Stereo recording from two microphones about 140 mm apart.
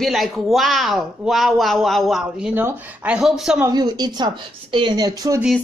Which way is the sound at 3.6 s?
30° right (ahead or behind).